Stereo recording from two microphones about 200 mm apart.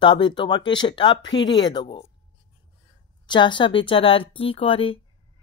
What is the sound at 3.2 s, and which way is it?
Speech, 25° left (ahead or behind).